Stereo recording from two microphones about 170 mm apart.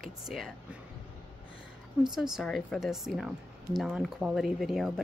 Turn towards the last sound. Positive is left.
turn(degrees=0)  # may be behind; listen again after turning